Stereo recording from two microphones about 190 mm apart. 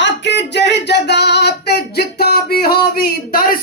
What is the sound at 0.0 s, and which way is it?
Music, 70° left (ahead or behind).